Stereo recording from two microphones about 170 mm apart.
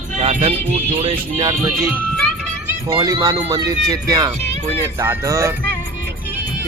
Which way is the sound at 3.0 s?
20° right (ahead or behind).